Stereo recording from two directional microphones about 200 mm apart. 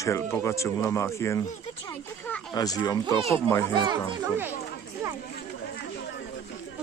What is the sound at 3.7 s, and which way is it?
Speech, 25° right (ahead or behind).